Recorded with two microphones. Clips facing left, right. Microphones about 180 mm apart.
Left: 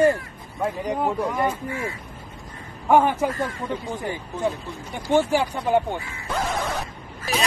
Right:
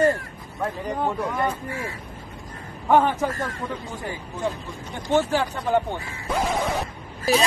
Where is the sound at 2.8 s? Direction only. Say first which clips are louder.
Left 1 dB; 10° left (ahead or behind).